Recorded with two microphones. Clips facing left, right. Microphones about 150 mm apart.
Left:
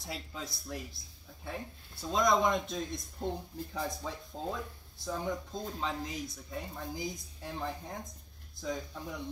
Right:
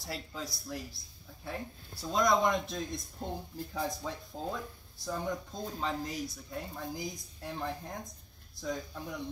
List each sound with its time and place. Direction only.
0.0 s speech: centre (ahead or behind)